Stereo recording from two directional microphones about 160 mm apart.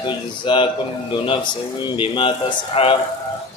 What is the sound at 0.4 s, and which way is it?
Speech, 30° left (ahead or behind).